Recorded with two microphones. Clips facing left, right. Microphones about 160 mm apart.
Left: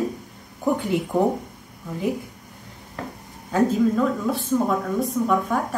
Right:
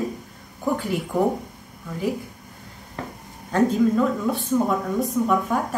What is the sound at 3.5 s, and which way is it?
Speech, centre (ahead or behind).